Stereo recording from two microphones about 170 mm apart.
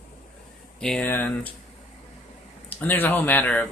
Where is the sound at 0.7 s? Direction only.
5° left (ahead or behind).